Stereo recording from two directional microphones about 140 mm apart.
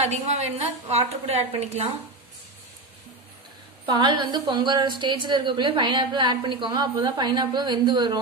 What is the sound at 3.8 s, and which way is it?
A woman's voice, 35° right (ahead or behind).